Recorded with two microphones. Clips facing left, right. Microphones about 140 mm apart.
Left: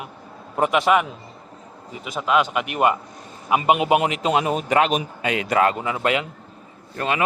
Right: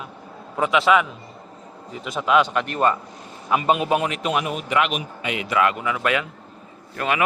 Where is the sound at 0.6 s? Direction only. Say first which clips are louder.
Left 1 dB; 45° left (ahead or behind).